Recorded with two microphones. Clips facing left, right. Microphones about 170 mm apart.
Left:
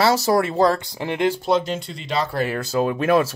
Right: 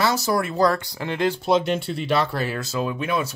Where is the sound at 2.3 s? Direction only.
55° left (ahead or behind); by 3.3 s 70° left (ahead or behind).